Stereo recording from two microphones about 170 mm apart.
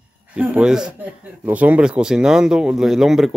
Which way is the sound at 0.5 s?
5° right (ahead or behind).